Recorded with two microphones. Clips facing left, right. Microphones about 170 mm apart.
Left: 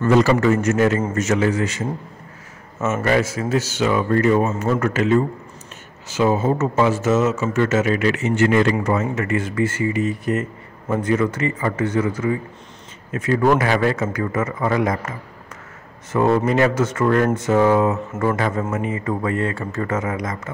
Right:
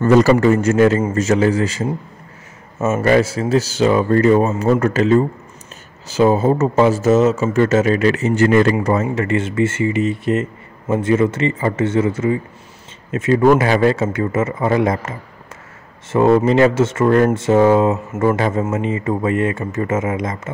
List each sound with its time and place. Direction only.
0.0 s speech: 40° right (ahead or behind)
3.0 s speech: 35° right (ahead or behind)